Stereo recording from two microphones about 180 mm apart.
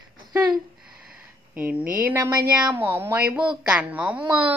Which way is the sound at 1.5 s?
5° right (ahead or behind).